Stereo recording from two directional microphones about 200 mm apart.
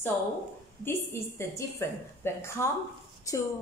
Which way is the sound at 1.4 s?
15° left (ahead or behind).